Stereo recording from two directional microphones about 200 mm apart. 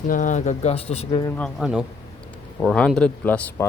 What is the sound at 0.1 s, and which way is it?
Speech, 40° left (ahead or behind).